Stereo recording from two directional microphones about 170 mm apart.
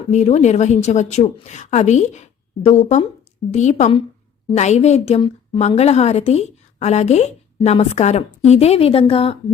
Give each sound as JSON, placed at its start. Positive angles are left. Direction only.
{"t": 0.1, "sound": "a woman's voice", "side_deg": 40}
{"t": 3.5, "sound": "a woman's voice", "side_deg": 45}